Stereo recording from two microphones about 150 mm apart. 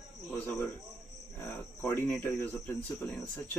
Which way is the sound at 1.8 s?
15° left (ahead or behind).